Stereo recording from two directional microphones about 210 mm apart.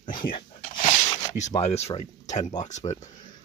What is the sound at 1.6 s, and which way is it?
Speech, 30° left (ahead or behind).